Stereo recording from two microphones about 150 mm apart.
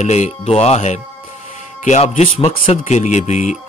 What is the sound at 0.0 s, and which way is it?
Speech, 50° left (ahead or behind).